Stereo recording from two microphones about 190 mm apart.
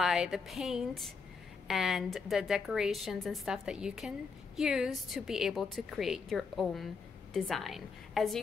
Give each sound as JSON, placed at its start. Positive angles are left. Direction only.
{"t": 0.0, "sound": "a woman's voice", "side_deg": 0}